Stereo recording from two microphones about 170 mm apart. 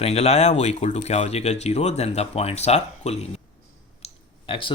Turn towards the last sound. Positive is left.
turn(degrees=30)  # may be behind; listen again after turning